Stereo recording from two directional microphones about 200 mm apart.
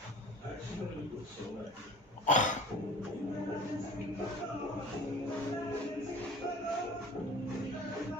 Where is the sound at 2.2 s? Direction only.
40° left (ahead or behind).